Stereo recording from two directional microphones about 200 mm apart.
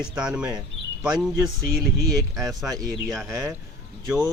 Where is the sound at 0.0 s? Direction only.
5° right (ahead or behind).